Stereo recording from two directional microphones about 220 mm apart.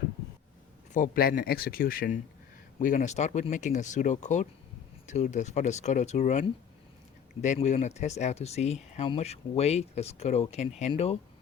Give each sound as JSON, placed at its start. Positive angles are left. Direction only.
{"t": 0.9, "sound": "speech", "side_deg": 40}
{"t": 7.4, "sound": "speech", "side_deg": 35}